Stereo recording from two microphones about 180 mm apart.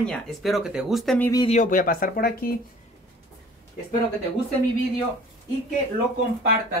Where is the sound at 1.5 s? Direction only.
45° left (ahead or behind).